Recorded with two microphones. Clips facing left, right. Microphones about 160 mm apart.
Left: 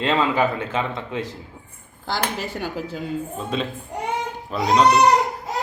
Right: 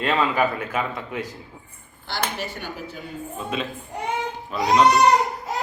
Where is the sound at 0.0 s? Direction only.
25° left (ahead or behind).